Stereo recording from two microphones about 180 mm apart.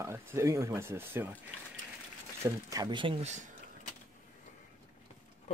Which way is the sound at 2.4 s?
15° right (ahead or behind).